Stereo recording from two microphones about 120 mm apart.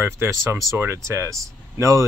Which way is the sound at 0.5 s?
20° right (ahead or behind).